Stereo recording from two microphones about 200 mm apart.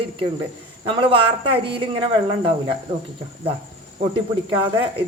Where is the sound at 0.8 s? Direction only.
25° right (ahead or behind).